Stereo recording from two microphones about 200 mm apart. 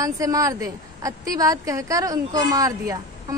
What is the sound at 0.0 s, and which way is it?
A woman's voice, 15° right (ahead or behind).